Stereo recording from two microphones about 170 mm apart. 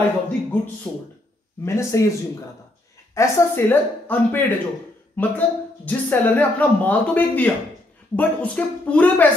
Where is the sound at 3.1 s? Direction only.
10° left (ahead or behind).